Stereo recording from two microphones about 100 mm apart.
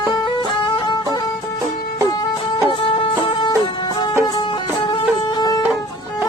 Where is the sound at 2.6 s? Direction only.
60° left (ahead or behind).